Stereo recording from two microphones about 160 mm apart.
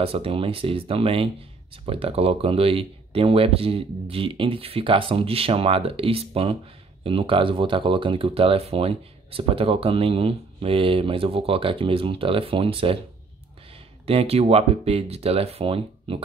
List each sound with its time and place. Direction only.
0.0 s speech: 35° right (ahead or behind)
14.0 s speech: 40° right (ahead or behind)